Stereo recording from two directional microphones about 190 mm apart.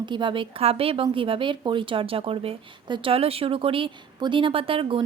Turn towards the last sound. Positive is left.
turn(degrees=-30)  # may be behind; listen again after turning